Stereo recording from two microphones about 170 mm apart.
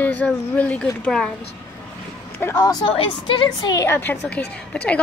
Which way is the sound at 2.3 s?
15° left (ahead or behind).